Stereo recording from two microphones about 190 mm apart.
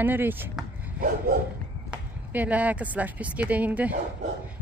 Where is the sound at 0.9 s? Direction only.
50° right (ahead or behind).